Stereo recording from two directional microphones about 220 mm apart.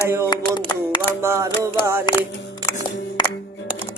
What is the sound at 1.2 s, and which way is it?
Music, 15° right (ahead or behind).